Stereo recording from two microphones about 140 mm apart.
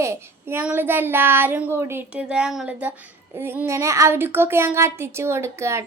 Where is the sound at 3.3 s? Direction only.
15° right (ahead or behind).